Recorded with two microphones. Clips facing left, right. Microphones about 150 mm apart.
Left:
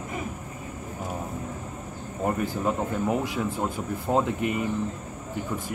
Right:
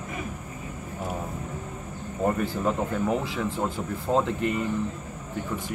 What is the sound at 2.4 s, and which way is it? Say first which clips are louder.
Speech: even; 10° left (ahead or behind).